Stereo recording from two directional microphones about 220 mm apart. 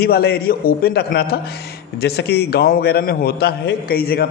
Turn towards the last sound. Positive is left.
turn(degrees=45)  # may be behind; listen again after turning